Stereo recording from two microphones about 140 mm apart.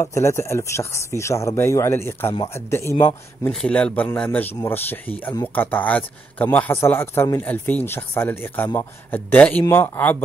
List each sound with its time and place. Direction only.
0.1 s speech: 20° left (ahead or behind)
3.6 s speech: 5° left (ahead or behind)